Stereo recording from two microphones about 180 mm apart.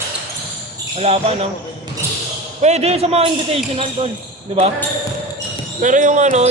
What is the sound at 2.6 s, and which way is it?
Speech, 40° right (ahead or behind).